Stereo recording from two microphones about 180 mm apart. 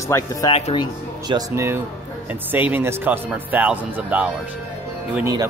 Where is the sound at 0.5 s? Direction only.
30° left (ahead or behind).